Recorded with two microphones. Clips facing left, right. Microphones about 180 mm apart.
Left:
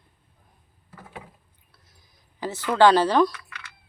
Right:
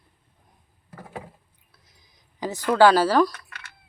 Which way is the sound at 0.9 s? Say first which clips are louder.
Right 4 dB; 40° right (ahead or behind).